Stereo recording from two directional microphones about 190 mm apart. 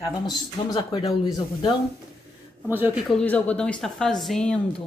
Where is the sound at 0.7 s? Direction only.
20° left (ahead or behind).